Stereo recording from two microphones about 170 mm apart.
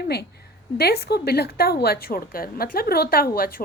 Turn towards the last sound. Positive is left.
turn(degrees=60)  # may be behind; listen again after turning